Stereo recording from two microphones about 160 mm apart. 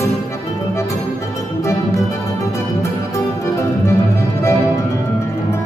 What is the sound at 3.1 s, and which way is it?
Music, 20° left (ahead or behind).